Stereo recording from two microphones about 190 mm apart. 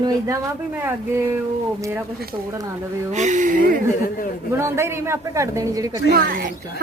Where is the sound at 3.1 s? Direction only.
40° right (ahead or behind).